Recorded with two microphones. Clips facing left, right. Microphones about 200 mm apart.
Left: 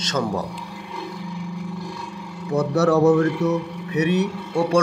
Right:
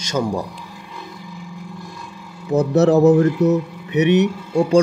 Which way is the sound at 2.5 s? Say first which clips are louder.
Right 4 dB; 20° right (ahead or behind).